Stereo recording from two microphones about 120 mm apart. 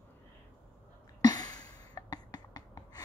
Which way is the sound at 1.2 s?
30° left (ahead or behind).